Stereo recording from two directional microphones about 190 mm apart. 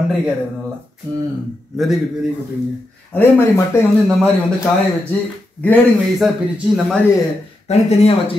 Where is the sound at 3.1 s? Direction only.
10° left (ahead or behind).